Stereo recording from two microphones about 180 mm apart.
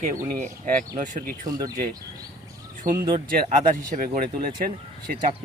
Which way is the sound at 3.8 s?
45° right (ahead or behind).